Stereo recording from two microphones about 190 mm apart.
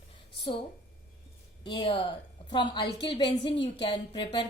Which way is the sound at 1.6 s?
25° left (ahead or behind).